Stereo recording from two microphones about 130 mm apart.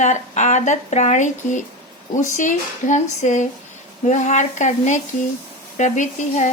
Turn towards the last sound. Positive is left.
turn(degrees=70)  # may be behind; listen again after turning